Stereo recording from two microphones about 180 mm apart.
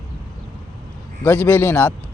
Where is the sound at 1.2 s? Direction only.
10° left (ahead or behind).